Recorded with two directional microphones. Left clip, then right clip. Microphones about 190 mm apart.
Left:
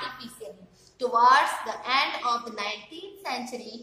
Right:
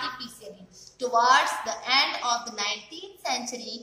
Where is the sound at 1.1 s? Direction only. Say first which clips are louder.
Left 1 dB; 5° left (ahead or behind).